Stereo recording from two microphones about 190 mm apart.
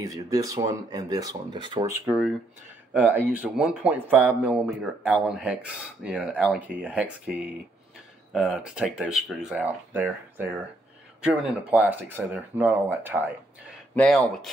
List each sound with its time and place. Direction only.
0.0 s speech: 20° right (ahead or behind)
1.9 s speech: 10° right (ahead or behind)
13.9 s speech: 5° left (ahead or behind)